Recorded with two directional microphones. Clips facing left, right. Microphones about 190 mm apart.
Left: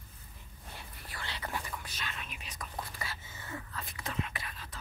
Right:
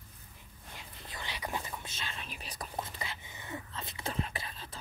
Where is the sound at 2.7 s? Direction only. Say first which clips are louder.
Right 2 dB; 20° right (ahead or behind).